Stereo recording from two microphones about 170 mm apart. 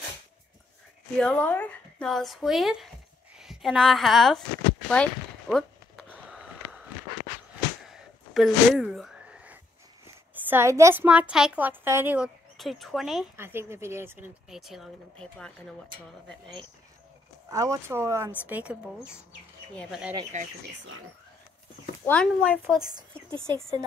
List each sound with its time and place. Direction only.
1.2 s a woman's voice: 10° left (ahead or behind)
4.8 s a sound: 5° left (ahead or behind)
7.9 s a sound: centre (ahead or behind)
10.0 s a woman's voice: 15° right (ahead or behind)
12.5 s a woman's voice: centre (ahead or behind)
13.4 s speech: 15° right (ahead or behind)
14.5 s a woman's voice: centre (ahead or behind)
17.5 s speech: 20° right (ahead or behind)
19.9 s a woman's voice: 5° right (ahead or behind)
22.0 s a woman's voice: 5° left (ahead or behind)
23.3 s speech: 30° right (ahead or behind)